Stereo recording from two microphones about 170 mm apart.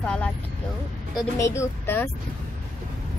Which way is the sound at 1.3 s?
15° left (ahead or behind).